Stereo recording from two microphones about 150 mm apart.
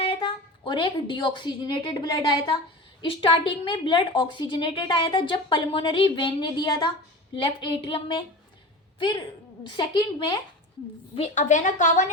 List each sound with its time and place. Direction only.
0.0 s a woman's voice: 40° left (ahead or behind)
11.1 s a woman's voice: 50° left (ahead or behind)